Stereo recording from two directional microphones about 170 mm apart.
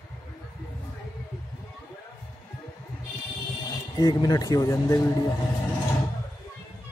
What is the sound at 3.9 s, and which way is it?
Speech, 25° left (ahead or behind).